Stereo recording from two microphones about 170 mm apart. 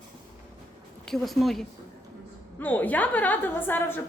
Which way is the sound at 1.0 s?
Centre (ahead or behind).